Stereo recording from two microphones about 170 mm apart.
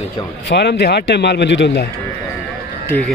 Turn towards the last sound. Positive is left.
turn(degrees=10)  # may be behind; listen again after turning